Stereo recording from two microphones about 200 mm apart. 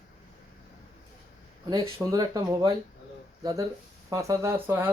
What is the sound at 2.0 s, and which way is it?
Speech, 20° right (ahead or behind).